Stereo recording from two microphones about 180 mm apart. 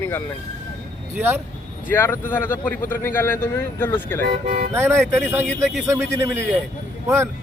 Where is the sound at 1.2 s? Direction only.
10° right (ahead or behind).